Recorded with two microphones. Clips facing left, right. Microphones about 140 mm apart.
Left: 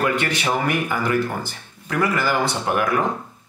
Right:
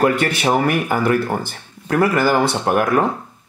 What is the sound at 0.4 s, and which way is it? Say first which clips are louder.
Speech: right 5 dB; 35° right (ahead or behind).